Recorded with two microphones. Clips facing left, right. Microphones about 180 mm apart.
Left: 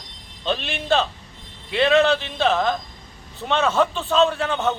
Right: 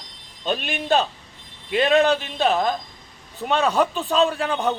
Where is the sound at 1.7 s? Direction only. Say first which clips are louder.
Even; 40° right (ahead or behind).